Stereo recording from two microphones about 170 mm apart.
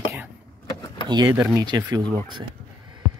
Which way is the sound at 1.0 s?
20° right (ahead or behind).